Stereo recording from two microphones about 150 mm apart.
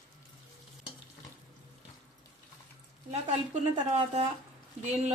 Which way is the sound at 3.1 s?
50° right (ahead or behind).